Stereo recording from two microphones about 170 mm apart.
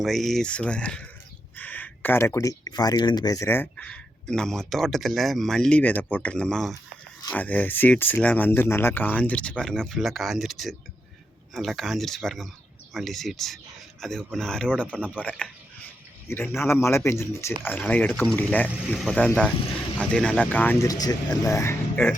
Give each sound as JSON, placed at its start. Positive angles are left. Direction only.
{"t": 0.0, "sound": "speech", "side_deg": 0}